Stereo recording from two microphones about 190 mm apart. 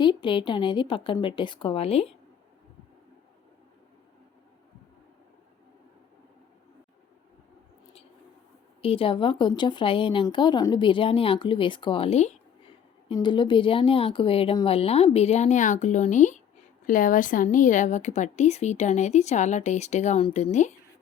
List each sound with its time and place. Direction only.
0.0 s speech: 25° left (ahead or behind)
8.8 s a woman's voice: 30° left (ahead or behind)